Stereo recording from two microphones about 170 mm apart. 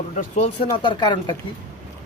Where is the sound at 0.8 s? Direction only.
25° left (ahead or behind).